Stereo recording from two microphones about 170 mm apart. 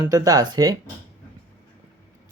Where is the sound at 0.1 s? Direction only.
20° right (ahead or behind).